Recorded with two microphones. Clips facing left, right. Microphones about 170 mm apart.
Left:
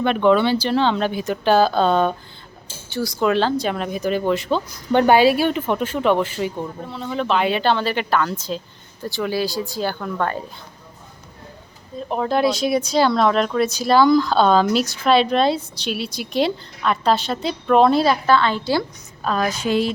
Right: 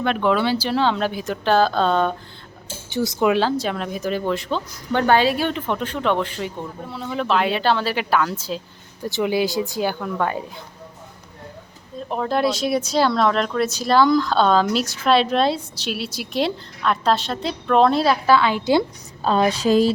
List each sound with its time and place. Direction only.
0.0 s speech: centre (ahead or behind)
2.9 s speech: 20° right (ahead or behind); by 4.6 s centre (ahead or behind)
4.9 s speech: 15° left (ahead or behind); by 9.0 s 10° right (ahead or behind)
9.0 s speech: 20° right (ahead or behind)
11.9 s speech: centre (ahead or behind); by 19.9 s 40° right (ahead or behind)